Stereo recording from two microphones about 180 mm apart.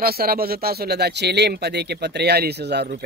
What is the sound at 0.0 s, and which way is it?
Speech, 55° right (ahead or behind).